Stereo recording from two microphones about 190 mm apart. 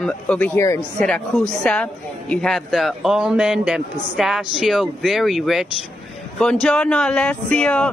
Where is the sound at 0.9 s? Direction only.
5° left (ahead or behind).